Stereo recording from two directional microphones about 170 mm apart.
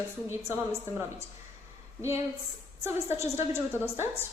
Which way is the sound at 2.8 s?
15° right (ahead or behind).